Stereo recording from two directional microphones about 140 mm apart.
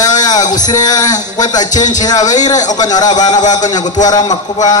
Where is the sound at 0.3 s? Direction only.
25° left (ahead or behind).